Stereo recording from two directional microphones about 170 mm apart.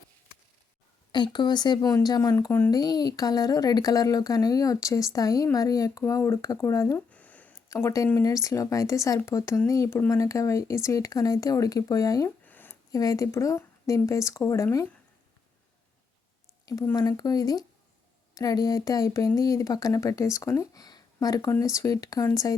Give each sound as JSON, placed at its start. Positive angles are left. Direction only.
{"t": 1.1, "sound": "speech", "side_deg": 25}
{"t": 16.6, "sound": "speech", "side_deg": 20}